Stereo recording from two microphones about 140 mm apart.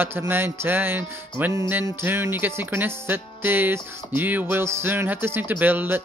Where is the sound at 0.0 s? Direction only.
15° right (ahead or behind).